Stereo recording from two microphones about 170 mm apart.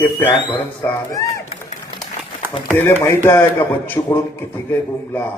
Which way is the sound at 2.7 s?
15° left (ahead or behind).